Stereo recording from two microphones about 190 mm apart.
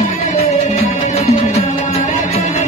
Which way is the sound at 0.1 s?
35° left (ahead or behind).